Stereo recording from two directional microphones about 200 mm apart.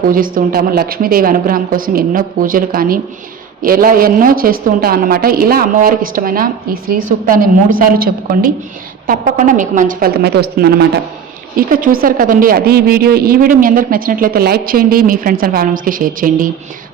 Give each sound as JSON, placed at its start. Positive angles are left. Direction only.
{"t": 0.1, "sound": "a woman's voice", "side_deg": -45}